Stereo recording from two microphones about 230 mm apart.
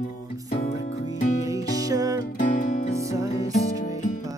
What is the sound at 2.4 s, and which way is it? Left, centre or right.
Music, left.